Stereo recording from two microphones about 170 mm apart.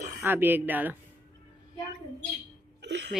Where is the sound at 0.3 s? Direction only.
10° right (ahead or behind).